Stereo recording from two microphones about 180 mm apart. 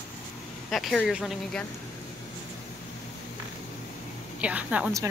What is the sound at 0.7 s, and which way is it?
Speech, centre (ahead or behind).